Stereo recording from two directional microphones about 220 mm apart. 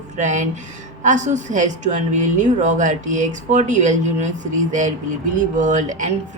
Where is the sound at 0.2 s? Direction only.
35° right (ahead or behind).